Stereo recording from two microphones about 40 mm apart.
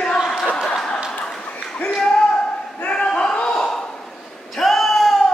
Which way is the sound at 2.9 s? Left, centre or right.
Centre.